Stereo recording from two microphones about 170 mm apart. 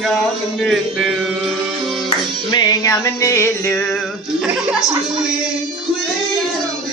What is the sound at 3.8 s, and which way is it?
Music, centre (ahead or behind).